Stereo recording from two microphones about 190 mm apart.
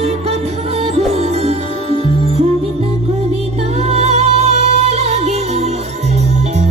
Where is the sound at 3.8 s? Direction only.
35° right (ahead or behind).